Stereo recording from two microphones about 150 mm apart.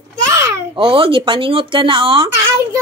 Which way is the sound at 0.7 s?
35° right (ahead or behind).